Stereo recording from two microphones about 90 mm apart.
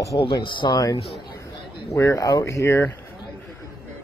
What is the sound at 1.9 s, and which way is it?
Speech, 35° left (ahead or behind).